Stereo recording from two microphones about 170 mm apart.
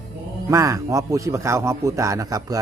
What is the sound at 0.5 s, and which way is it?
A man's voice, 20° right (ahead or behind).